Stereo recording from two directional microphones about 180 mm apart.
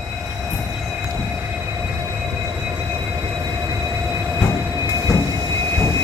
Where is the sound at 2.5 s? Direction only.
15° right (ahead or behind).